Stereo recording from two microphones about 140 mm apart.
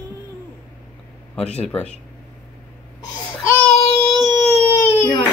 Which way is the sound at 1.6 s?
10° left (ahead or behind).